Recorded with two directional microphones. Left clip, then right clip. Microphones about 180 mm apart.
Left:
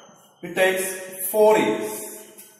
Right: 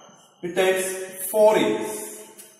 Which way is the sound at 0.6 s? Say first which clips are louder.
Left 1 dB; 10° right (ahead or behind).